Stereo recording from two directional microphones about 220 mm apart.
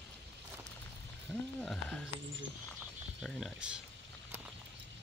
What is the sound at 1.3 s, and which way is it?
Speech, 5° left (ahead or behind).